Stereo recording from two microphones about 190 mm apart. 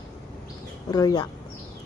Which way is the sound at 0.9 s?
20° left (ahead or behind).